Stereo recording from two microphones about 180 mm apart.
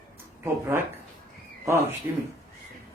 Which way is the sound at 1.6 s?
15° right (ahead or behind).